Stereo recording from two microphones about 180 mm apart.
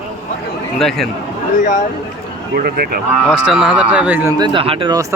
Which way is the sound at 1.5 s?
45° left (ahead or behind).